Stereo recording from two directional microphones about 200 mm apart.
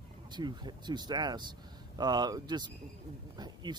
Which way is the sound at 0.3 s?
20° right (ahead or behind).